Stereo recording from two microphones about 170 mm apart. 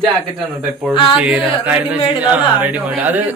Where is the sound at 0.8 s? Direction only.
Centre (ahead or behind).